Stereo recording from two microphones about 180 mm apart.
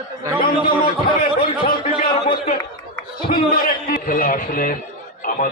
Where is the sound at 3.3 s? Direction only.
55° left (ahead or behind).